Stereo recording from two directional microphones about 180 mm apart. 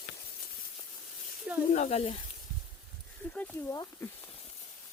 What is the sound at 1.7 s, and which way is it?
Speech, 40° left (ahead or behind).